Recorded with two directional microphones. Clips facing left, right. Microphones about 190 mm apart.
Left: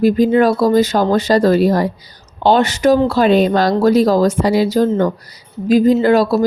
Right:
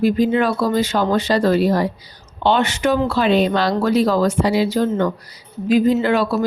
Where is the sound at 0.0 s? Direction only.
40° left (ahead or behind).